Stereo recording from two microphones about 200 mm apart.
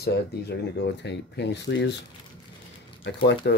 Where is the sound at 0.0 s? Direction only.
55° left (ahead or behind).